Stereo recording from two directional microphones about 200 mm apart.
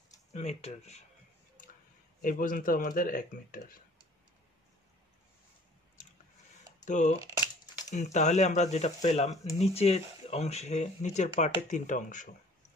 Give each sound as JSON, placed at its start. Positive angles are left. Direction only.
{"t": 0.3, "sound": "speech", "side_deg": 35}
{"t": 2.2, "sound": "speech", "side_deg": 45}
{"t": 6.0, "sound": "a sound", "side_deg": 35}
{"t": 6.8, "sound": "speech", "side_deg": 40}